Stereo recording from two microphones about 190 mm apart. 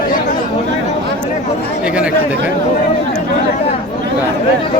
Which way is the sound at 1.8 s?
5° right (ahead or behind).